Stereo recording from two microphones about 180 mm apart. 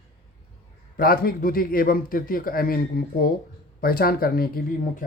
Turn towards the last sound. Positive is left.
turn(degrees=50)  # may be behind; listen again after turning